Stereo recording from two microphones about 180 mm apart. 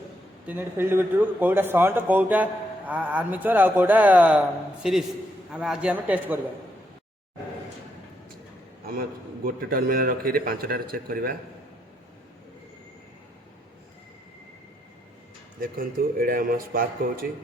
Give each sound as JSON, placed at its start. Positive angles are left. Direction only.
{"t": 0.4, "sound": "a man's voice", "side_deg": -10}
{"t": 9.0, "sound": "a man's voice", "side_deg": -55}
{"t": 15.6, "sound": "speech", "side_deg": -55}